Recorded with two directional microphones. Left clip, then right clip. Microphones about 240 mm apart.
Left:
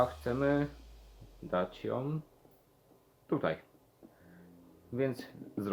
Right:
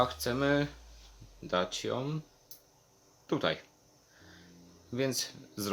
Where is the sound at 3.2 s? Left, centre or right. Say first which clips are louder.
Right 2 dB; centre.